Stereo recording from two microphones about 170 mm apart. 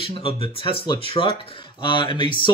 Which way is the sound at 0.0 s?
30° left (ahead or behind).